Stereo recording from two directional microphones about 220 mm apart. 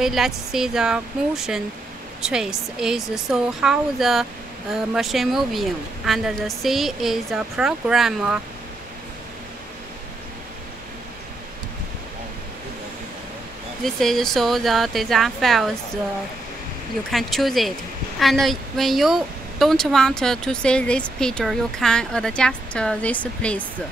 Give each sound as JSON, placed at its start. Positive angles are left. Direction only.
{"t": 0.0, "sound": "speech", "side_deg": 0}
{"t": 13.8, "sound": "speech", "side_deg": 0}
{"t": 17.1, "sound": "speech", "side_deg": 0}